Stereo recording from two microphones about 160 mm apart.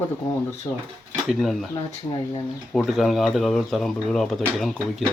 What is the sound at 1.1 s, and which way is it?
Speech, centre (ahead or behind).